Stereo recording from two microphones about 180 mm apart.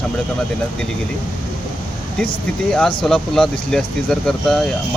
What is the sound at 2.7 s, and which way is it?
Speech, 5° left (ahead or behind).